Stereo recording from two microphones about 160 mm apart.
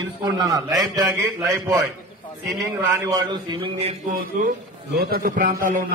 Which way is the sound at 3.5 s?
35° right (ahead or behind).